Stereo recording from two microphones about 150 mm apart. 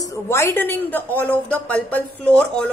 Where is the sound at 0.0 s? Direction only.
20° left (ahead or behind).